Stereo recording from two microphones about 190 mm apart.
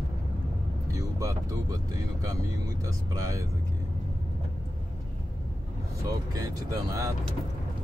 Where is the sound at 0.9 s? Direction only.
15° right (ahead or behind).